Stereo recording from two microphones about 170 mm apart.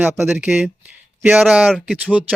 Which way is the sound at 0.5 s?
5° right (ahead or behind).